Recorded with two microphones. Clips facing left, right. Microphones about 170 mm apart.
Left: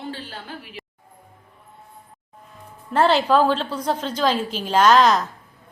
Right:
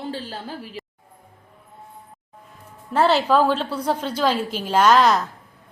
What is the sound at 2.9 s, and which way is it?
A woman's voice, 10° right (ahead or behind).